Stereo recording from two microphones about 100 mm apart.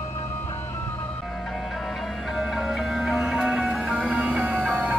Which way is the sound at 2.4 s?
5° right (ahead or behind).